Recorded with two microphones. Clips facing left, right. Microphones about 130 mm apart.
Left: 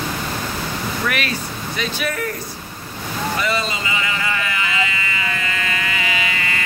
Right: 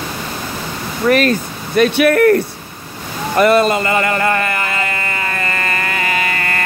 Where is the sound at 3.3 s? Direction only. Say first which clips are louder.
Right 15 dB; 55° right (ahead or behind).